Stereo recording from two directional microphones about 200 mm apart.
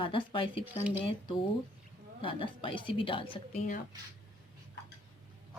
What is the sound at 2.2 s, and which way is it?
A woman's voice, 25° left (ahead or behind).